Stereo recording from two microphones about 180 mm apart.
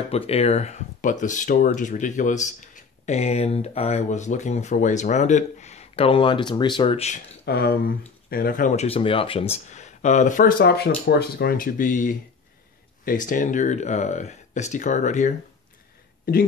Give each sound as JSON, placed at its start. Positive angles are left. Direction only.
{"t": 0.1, "sound": "speech", "side_deg": 35}
{"t": 7.4, "sound": "speech", "side_deg": 60}
{"t": 10.6, "sound": "speech", "side_deg": 65}
{"t": 16.3, "sound": "speech", "side_deg": 55}